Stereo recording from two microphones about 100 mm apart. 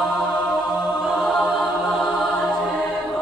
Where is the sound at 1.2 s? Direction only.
Centre (ahead or behind).